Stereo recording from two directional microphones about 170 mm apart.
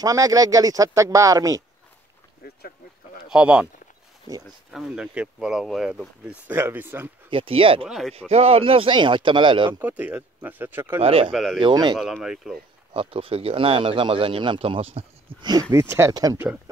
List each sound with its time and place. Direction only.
0.0 s speech: 20° right (ahead or behind)
2.4 s a sound: 65° left (ahead or behind)
3.3 s speech: 5° right (ahead or behind)
4.6 s speech: 5° right (ahead or behind)
7.2 s speech: 30° right (ahead or behind)
7.8 s speech: centre (ahead or behind)
8.3 s speech: 35° right (ahead or behind)
9.7 s speech: 10° right (ahead or behind)
11.0 s speech: 35° right (ahead or behind)
11.3 s speech: centre (ahead or behind)
11.6 s speech: 25° right (ahead or behind)
12.0 s speech: centre (ahead or behind)
12.9 s speech: 35° right (ahead or behind)
15.7 s speech: 15° right (ahead or behind)